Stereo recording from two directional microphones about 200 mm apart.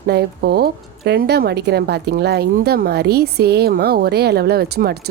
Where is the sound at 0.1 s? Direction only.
55° right (ahead or behind).